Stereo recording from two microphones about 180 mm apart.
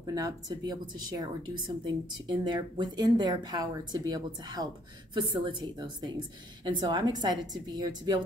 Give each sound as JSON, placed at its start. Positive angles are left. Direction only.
{"t": 0.0, "sound": "a woman's voice", "side_deg": -20}